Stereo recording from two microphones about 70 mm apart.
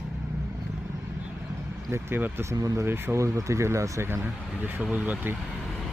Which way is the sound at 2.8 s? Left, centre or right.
Right.